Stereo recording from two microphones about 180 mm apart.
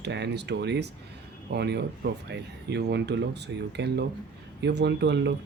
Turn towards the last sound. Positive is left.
turn(degrees=-75)  # may be behind; listen again after turning